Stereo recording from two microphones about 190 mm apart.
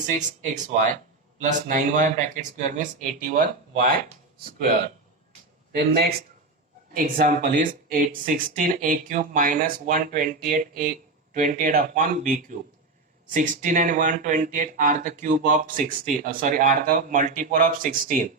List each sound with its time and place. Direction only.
0.5 s speech: 40° right (ahead or behind)
6.9 s speech: 50° right (ahead or behind)